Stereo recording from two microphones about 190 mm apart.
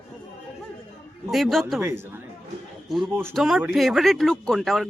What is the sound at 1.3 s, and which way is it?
Speech, centre (ahead or behind).